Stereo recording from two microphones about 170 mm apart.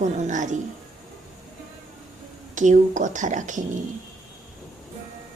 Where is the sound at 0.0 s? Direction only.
45° right (ahead or behind).